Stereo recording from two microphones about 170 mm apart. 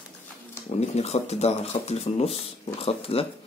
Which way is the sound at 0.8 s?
40° left (ahead or behind).